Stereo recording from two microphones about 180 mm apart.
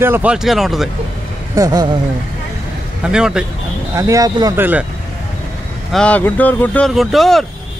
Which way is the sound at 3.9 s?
20° right (ahead or behind).